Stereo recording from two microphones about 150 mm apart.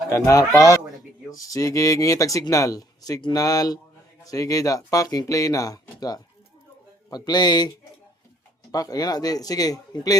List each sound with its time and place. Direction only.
0.1 s speech: 20° left (ahead or behind)
8.7 s speech: 25° left (ahead or behind)